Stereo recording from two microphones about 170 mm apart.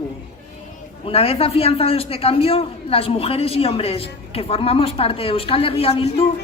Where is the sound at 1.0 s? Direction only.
35° left (ahead or behind).